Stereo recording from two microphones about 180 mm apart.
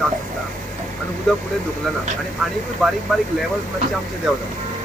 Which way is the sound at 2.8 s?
Centre (ahead or behind).